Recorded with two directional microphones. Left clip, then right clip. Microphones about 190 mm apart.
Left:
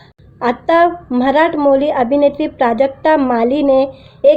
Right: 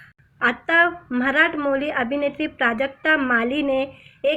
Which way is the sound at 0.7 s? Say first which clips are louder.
Left 8 dB; 5° left (ahead or behind).